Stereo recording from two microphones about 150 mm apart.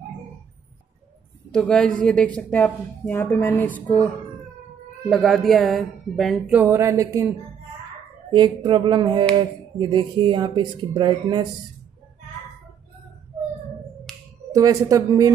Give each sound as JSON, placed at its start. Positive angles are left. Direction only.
{"t": 1.5, "sound": "speech", "side_deg": 5}
{"t": 5.1, "sound": "speech", "side_deg": 0}
{"t": 6.5, "sound": "speech", "side_deg": -15}
{"t": 8.3, "sound": "speech", "side_deg": -30}
{"t": 14.1, "sound": "a sound", "side_deg": 5}
{"t": 14.5, "sound": "speech", "side_deg": -25}